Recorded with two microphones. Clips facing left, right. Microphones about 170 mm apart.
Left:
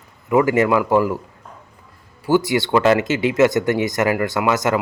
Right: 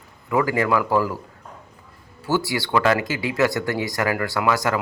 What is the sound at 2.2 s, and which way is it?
Speech, 15° left (ahead or behind).